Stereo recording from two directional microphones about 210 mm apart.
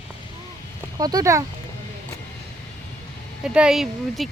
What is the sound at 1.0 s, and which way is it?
Speech, 15° right (ahead or behind).